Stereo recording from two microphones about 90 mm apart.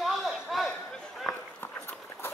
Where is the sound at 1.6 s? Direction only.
25° left (ahead or behind).